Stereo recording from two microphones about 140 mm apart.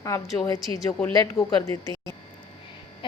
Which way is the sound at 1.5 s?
25° left (ahead or behind).